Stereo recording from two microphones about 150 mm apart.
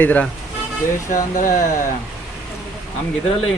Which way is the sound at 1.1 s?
60° left (ahead or behind).